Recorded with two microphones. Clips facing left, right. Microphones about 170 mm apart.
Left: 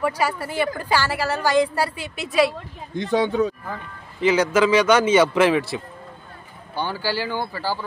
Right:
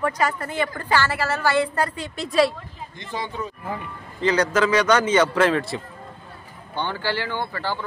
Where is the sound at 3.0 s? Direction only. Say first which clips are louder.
Left 11 dB; 75° left (ahead or behind).